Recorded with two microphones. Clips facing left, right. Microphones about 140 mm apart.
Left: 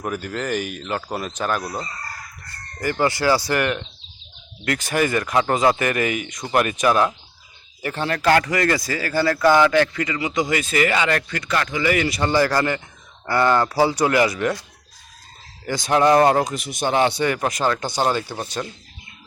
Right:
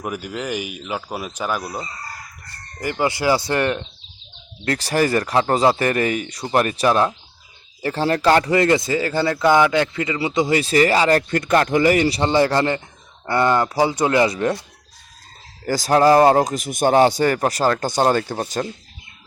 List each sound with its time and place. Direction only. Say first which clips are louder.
0.0 s speech: left 1 dB; 10° right (ahead or behind); by 14.6 s 30° right (ahead or behind)
15.6 s speech: right 3 dB; 40° right (ahead or behind)